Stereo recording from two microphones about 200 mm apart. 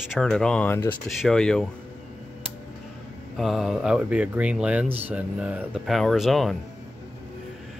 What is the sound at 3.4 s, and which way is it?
Speech, centre (ahead or behind).